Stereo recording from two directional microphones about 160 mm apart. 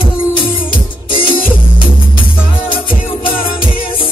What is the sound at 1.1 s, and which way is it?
Music, 35° left (ahead or behind).